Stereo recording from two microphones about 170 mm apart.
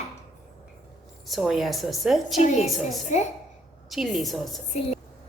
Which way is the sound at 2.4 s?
40° left (ahead or behind).